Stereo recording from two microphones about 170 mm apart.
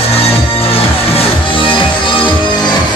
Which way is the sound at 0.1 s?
35° left (ahead or behind).